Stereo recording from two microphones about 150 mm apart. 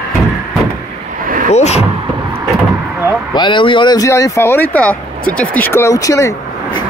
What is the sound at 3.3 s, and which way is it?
Speech, 30° left (ahead or behind).